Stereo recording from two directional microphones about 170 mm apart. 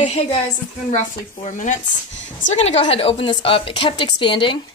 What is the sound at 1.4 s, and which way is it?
A woman's voice, 50° left (ahead or behind).